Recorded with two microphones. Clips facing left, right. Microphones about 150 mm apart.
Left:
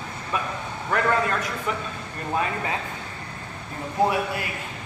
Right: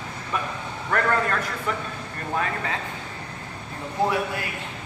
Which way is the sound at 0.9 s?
5° left (ahead or behind).